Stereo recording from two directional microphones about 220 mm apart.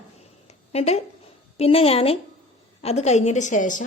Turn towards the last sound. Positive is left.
turn(degrees=35)  # may be behind; listen again after turning